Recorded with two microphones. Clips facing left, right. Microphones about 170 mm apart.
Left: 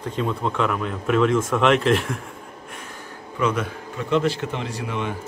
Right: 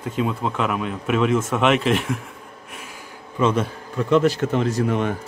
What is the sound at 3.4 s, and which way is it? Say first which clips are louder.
Speech: right 3 dB; 25° right (ahead or behind).